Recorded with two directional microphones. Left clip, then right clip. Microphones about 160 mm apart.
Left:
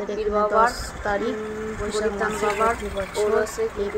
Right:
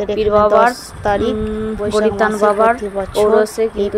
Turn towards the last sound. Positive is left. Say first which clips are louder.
# right 8 dB
turn(degrees=-45)  # may be behind; listen again after turning